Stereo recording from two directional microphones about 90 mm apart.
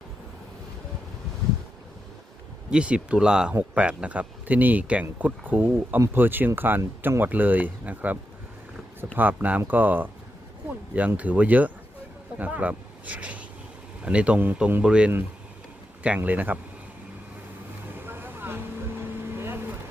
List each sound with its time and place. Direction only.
2.6 s speech: 10° right (ahead or behind)
18.0 s vehicle: 25° right (ahead or behind)